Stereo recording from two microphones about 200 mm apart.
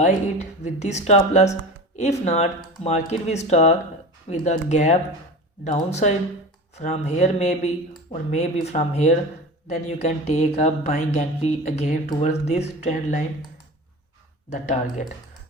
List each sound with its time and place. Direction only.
0.0 s speech: 35° left (ahead or behind)
14.5 s speech: 40° left (ahead or behind)